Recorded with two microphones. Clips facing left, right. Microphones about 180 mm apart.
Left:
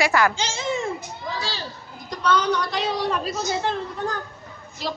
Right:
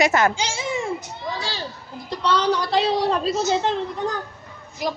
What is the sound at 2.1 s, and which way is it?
A woman's voice, 30° right (ahead or behind).